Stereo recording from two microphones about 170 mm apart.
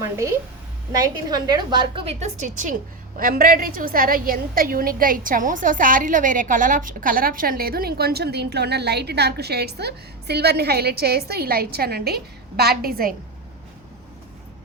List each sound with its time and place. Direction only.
0.9 s a woman's voice: 25° right (ahead or behind)
2.2 s a woman's voice: 45° right (ahead or behind)